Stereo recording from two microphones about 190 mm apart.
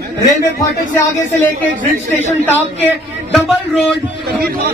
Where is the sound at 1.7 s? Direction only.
40° right (ahead or behind).